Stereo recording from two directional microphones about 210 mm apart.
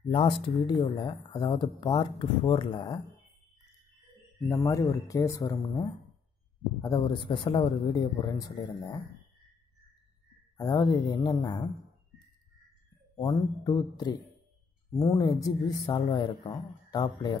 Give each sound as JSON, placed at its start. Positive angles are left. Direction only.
{"t": 0.1, "sound": "speech", "side_deg": 20}
{"t": 4.5, "sound": "speech", "side_deg": 15}
{"t": 10.6, "sound": "speech", "side_deg": 20}
{"t": 13.1, "sound": "speech", "side_deg": 20}